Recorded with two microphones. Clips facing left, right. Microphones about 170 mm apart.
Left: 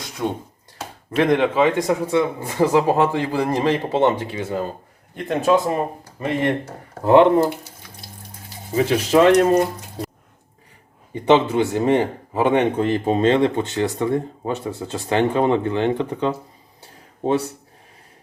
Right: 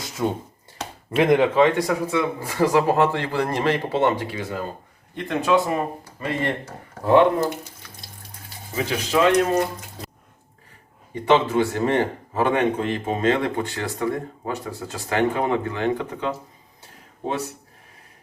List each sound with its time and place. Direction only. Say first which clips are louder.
0.2 s speech: even; 5° right (ahead or behind)
1.5 s speech: even; 10° left (ahead or behind)
1.9 s speech: left 4 dB; 30° left (ahead or behind)
2.6 s speech: left 2 dB; 15° left (ahead or behind)
5.1 s speech: left 2 dB; 40° left (ahead or behind)
6.1 s speech: left 5 dB; 20° left (ahead or behind)
8.7 s speech: left 6 dB; 35° left (ahead or behind)
11.1 s speech: left 3 dB; 20° left (ahead or behind)
12.5 s speech: left 4 dB; 30° left (ahead or behind)